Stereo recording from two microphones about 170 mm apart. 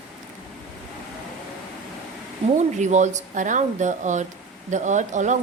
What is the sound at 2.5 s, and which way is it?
Speech, 45° right (ahead or behind).